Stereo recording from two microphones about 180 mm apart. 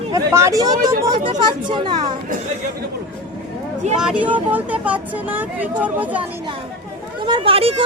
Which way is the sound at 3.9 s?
5° right (ahead or behind).